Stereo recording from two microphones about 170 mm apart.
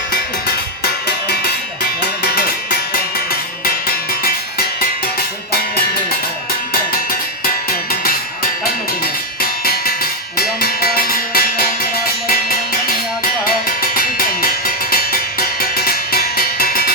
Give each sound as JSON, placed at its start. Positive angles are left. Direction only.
{"t": 2.2, "sound": "music", "side_deg": 70}
{"t": 3.8, "sound": "music", "side_deg": 60}
{"t": 9.6, "sound": "music", "side_deg": 60}
{"t": 12.9, "sound": "music", "side_deg": 60}